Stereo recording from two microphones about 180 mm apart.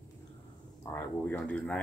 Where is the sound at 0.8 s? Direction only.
15° left (ahead or behind).